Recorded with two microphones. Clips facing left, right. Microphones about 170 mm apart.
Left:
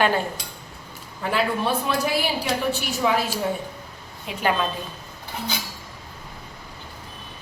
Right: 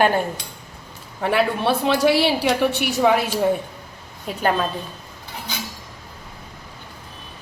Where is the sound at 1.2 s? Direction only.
70° right (ahead or behind).